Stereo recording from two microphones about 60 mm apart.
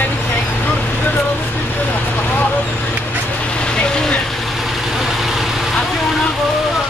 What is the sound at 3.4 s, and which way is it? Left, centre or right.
Vehicle, centre.